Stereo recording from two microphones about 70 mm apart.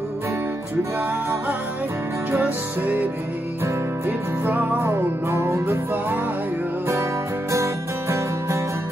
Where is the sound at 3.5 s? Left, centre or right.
Right.